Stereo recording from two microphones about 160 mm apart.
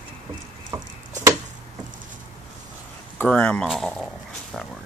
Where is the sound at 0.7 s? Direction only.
25° right (ahead or behind).